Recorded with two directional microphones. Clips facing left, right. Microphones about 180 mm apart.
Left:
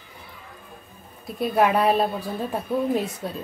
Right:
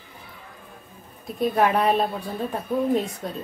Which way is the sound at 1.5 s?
5° left (ahead or behind).